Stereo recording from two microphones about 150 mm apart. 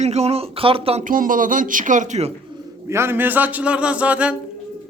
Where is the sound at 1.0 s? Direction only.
65° right (ahead or behind); by 2.3 s 50° right (ahead or behind).